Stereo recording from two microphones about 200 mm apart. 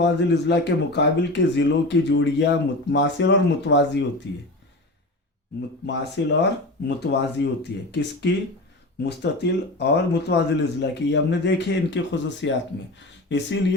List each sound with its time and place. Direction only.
0.0 s speech: 60° left (ahead or behind)
5.8 s speech: 60° left (ahead or behind)